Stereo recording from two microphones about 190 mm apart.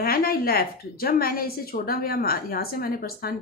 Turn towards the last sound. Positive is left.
turn(degrees=50)  # may be behind; listen again after turning